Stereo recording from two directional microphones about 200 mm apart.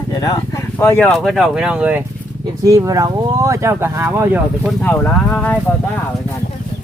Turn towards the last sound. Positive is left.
turn(degrees=10)  # may be behind; listen again after turning